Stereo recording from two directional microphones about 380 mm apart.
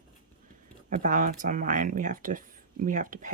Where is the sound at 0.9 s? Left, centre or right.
Right.